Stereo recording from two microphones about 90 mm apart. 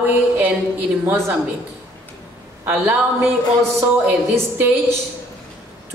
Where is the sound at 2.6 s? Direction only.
20° right (ahead or behind).